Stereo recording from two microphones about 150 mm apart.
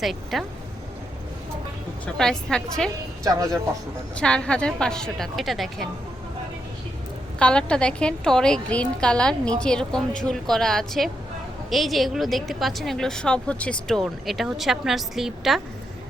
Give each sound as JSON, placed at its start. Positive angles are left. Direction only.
{"t": 0.0, "sound": "a woman's voice", "side_deg": 0}
{"t": 2.1, "sound": "a woman's voice", "side_deg": 5}
{"t": 3.2, "sound": "speech", "side_deg": -25}
{"t": 4.2, "sound": "a woman's voice", "side_deg": 5}
{"t": 7.3, "sound": "a woman's voice", "side_deg": 5}